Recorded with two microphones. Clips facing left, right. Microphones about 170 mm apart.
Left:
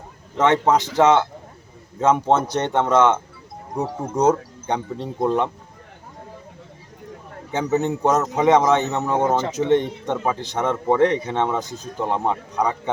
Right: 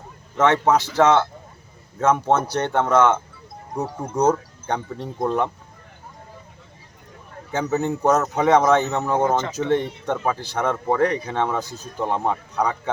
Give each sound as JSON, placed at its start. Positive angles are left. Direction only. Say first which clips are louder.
{"t": 0.3, "sound": "speech", "louder": "even", "side_deg": 15}
{"t": 4.2, "sound": "speech", "louder": "left 1 dB", "side_deg": 20}
{"t": 7.5, "sound": "a man's voice", "louder": "left 1 dB", "side_deg": 20}